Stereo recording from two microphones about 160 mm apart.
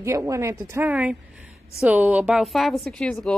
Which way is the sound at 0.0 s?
20° right (ahead or behind).